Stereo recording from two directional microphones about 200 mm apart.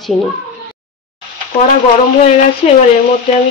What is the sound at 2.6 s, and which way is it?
Speech, 30° left (ahead or behind).